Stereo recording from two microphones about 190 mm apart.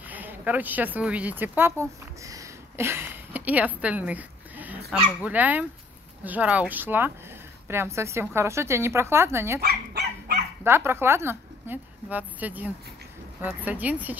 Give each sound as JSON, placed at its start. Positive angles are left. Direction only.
{"t": 0.1, "sound": "a woman's voice", "side_deg": -10}
{"t": 9.6, "sound": "dog", "side_deg": -55}
{"t": 10.6, "sound": "a woman's voice", "side_deg": -10}